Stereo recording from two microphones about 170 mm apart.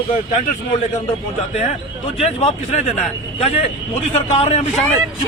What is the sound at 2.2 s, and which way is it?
Speech, 35° left (ahead or behind).